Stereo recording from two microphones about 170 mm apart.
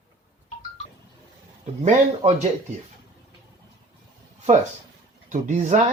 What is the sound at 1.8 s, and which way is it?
Speech, 40° right (ahead or behind).